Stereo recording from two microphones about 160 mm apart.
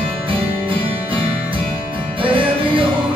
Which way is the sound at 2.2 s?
35° right (ahead or behind).